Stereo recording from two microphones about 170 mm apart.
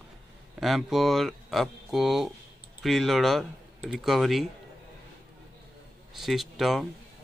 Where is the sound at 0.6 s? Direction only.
Centre (ahead or behind).